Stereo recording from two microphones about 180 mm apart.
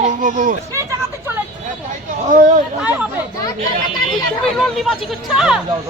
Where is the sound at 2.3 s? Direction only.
45° right (ahead or behind).